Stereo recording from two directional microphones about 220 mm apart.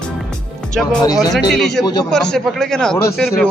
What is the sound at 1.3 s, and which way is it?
A man's voice, centre (ahead or behind).